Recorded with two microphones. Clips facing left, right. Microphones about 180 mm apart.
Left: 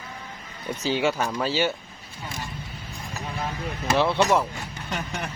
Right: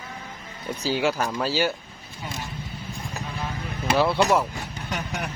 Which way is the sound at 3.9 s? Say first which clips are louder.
Right 1 dB; 5° right (ahead or behind).